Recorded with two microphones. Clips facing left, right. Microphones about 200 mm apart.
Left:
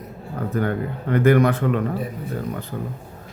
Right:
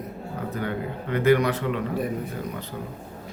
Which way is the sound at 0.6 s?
50° left (ahead or behind).